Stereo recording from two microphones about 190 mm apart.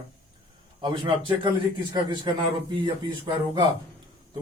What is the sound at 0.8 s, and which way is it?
A man's voice, 25° right (ahead or behind).